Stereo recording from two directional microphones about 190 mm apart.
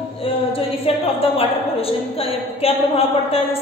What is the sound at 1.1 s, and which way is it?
A woman's voice, 30° left (ahead or behind).